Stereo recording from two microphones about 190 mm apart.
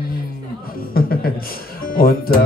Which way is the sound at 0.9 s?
50° left (ahead or behind).